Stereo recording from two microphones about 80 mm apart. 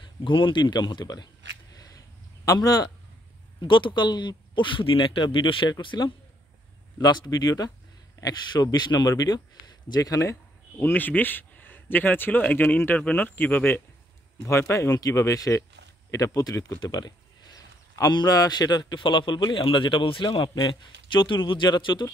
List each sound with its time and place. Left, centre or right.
0.0 s speech: left
3.6 s speech: left
7.0 s speech: left
10.8 s speech: left
16.8 s a sound: left
18.1 s a man's voice: left